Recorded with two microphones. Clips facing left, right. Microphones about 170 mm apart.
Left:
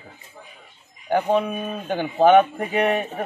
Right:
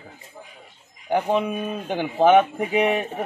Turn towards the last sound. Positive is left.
turn(degrees=-15)  # may be behind; listen again after turning